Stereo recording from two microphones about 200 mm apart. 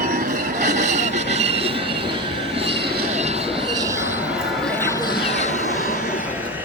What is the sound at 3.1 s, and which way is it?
Train, 35° right (ahead or behind).